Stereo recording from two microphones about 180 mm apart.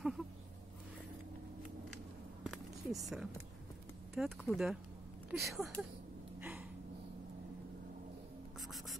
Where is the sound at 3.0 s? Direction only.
Centre (ahead or behind).